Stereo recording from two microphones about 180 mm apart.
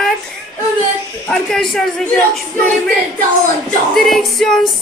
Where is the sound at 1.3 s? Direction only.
5° left (ahead or behind).